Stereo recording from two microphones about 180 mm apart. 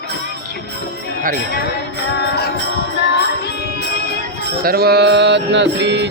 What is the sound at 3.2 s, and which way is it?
Music, 65° left (ahead or behind).